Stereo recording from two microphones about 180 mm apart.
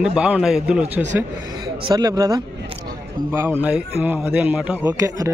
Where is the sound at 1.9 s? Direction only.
20° right (ahead or behind).